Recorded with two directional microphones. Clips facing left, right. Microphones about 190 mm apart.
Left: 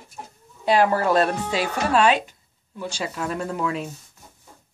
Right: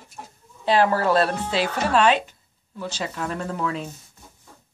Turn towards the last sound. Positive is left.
turn(degrees=10)  # may be behind; listen again after turning